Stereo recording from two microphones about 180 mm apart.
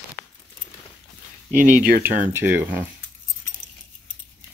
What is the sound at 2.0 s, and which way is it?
Speech, 10° right (ahead or behind).